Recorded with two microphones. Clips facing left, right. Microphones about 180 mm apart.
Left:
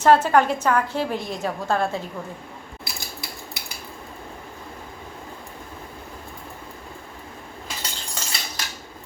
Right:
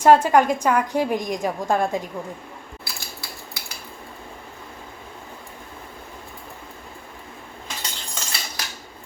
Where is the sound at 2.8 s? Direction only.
20° left (ahead or behind).